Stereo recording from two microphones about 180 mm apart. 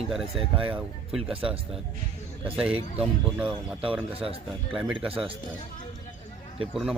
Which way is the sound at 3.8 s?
30° right (ahead or behind).